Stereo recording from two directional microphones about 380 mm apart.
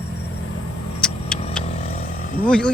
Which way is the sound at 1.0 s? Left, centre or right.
Centre.